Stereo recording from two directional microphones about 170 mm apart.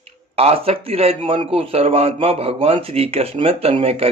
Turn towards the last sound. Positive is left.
turn(degrees=-35)  # may be behind; listen again after turning